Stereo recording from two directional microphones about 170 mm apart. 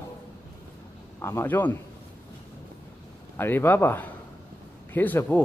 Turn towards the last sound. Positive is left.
turn(degrees=10)  # may be behind; listen again after turning